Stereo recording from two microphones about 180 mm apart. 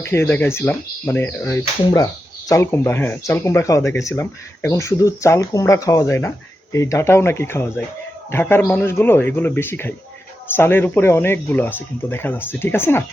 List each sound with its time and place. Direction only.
0.0 s speech: 15° left (ahead or behind)